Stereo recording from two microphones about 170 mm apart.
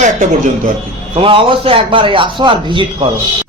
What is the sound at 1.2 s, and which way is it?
A man's voice, 30° right (ahead or behind).